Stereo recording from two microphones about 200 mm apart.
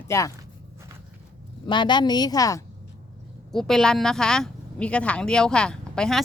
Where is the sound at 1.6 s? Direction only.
25° left (ahead or behind).